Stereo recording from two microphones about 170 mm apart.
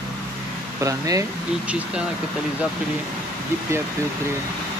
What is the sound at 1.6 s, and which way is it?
Speech, 5° right (ahead or behind).